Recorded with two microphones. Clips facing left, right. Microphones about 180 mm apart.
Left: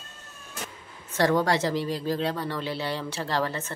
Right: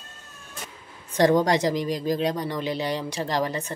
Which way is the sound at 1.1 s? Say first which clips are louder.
Right 4 dB; 15° right (ahead or behind).